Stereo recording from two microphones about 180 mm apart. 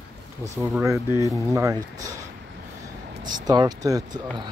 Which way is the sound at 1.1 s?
15° right (ahead or behind).